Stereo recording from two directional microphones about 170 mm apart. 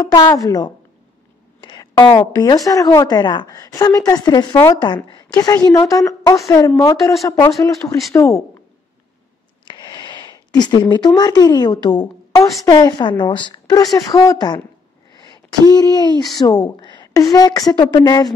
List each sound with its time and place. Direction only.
0.0 s a woman's voice: 20° left (ahead or behind)
1.6 s a sound: 25° left (ahead or behind)
2.3 s a woman's voice: 20° left (ahead or behind)
9.7 s a woman's voice: 25° left (ahead or behind)